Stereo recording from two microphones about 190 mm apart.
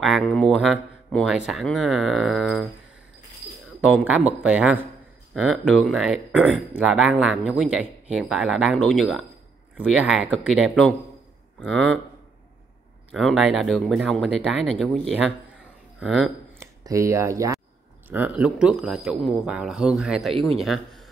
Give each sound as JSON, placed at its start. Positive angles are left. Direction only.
{"t": 0.0, "sound": "speech", "side_deg": 0}
{"t": 3.8, "sound": "speech", "side_deg": -5}
{"t": 13.1, "sound": "speech", "side_deg": 0}
{"t": 16.8, "sound": "speech", "side_deg": -15}